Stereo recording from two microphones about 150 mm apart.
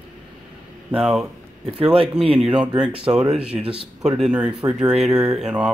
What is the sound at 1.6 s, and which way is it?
Speech, 40° right (ahead or behind).